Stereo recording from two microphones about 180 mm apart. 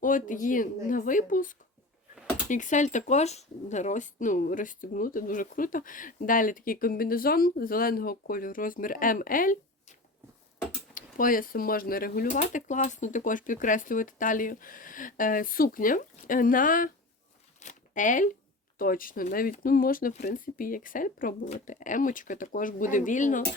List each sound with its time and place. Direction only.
0.0 s speech: 45° left (ahead or behind)
10.9 s speech: 50° left (ahead or behind)
17.6 s a sound: 45° left (ahead or behind)
18.8 s speech: 50° left (ahead or behind)